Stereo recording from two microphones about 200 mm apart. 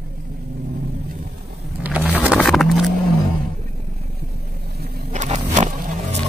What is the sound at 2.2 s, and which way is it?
Music, centre (ahead or behind).